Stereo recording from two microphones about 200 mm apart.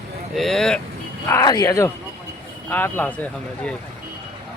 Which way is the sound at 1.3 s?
15° left (ahead or behind).